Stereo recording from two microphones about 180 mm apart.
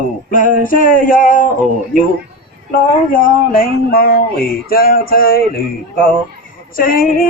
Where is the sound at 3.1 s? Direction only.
50° left (ahead or behind).